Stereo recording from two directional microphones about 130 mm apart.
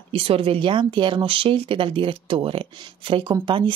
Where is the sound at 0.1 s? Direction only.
45° right (ahead or behind).